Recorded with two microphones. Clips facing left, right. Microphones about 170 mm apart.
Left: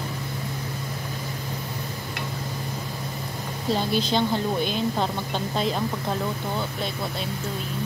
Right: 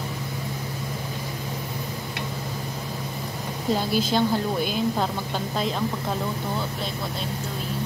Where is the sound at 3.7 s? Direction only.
5° right (ahead or behind).